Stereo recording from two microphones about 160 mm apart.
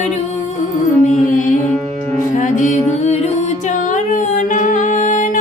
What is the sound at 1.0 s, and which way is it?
Music, 55° left (ahead or behind).